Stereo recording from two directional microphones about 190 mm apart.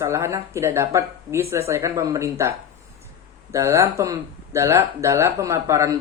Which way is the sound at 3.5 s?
15° right (ahead or behind).